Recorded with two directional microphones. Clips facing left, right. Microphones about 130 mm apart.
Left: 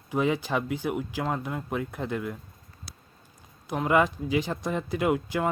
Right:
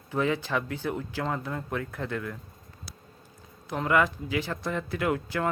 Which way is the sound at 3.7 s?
20° left (ahead or behind).